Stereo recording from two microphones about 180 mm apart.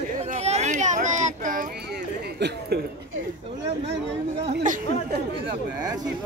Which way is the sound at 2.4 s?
70° right (ahead or behind).